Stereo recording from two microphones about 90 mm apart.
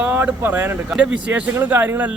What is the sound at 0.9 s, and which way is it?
Speech, 10° right (ahead or behind).